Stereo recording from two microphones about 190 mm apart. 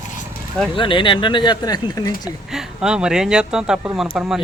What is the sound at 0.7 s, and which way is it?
Speech, 25° left (ahead or behind).